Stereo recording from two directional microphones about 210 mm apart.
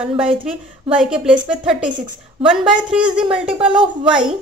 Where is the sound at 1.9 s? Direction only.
20° right (ahead or behind).